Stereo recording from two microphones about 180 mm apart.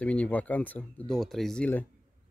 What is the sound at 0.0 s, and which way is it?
Speech, 5° left (ahead or behind).